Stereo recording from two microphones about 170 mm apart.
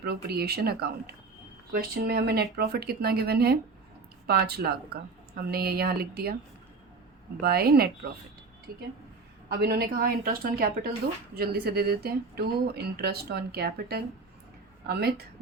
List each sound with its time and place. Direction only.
0.0 s speech: 70° right (ahead or behind)
7.4 s a woman's voice: 65° right (ahead or behind)
9.5 s a woman's voice: 70° right (ahead or behind)
11.3 s speech: 65° right (ahead or behind)